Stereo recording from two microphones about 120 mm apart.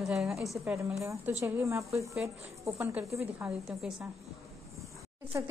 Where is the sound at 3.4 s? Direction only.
5° right (ahead or behind).